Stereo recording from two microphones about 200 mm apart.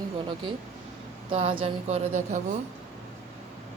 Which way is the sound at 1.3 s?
30° right (ahead or behind).